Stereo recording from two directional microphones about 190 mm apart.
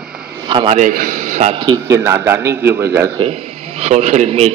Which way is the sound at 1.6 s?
20° right (ahead or behind).